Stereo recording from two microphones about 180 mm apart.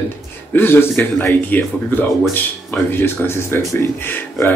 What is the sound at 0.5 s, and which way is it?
Speech, 10° left (ahead or behind).